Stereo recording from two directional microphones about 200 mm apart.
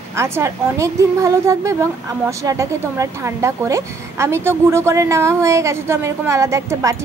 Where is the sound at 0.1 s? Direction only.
15° right (ahead or behind).